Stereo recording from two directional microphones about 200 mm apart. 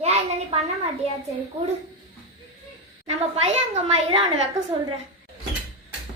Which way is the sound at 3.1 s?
35° right (ahead or behind).